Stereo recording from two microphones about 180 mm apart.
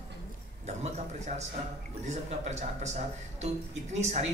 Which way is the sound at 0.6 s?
40° right (ahead or behind).